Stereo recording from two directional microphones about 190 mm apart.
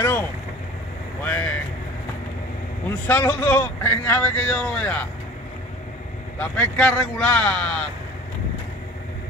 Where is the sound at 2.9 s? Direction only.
10° left (ahead or behind).